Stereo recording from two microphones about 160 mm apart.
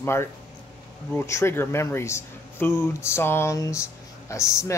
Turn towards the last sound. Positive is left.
turn(degrees=20)  # may be behind; listen again after turning